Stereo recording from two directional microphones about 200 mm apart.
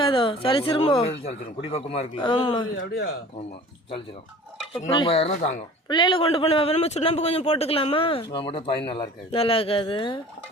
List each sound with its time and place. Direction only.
0.0 s a sound: 25° left (ahead or behind)
0.4 s a man's voice: 25° left (ahead or behind)
2.7 s speech: 55° left (ahead or behind)
4.8 s a man's voice: 25° left (ahead or behind)